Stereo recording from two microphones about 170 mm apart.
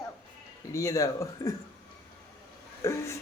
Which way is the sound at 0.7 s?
20° left (ahead or behind).